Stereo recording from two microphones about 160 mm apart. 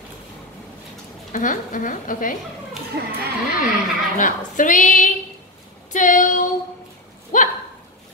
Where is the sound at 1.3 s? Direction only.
55° left (ahead or behind).